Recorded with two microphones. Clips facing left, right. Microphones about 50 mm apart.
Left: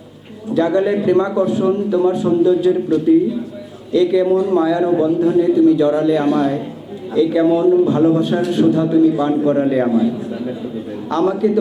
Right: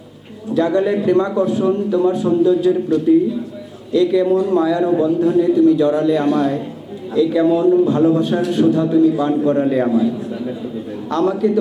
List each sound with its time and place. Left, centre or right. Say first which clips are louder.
0.5 s a man's voice: left 1 dB; left